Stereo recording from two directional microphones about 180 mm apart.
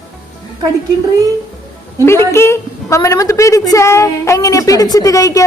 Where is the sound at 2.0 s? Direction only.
15° left (ahead or behind).